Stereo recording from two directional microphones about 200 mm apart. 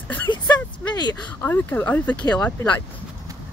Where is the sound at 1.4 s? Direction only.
10° left (ahead or behind).